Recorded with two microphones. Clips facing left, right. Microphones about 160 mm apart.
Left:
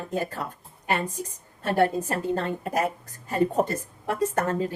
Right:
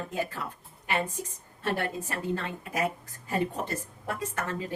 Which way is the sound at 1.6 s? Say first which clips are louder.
Left 8 dB; 45° left (ahead or behind).